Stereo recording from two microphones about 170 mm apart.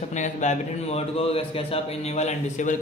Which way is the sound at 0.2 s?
45° left (ahead or behind).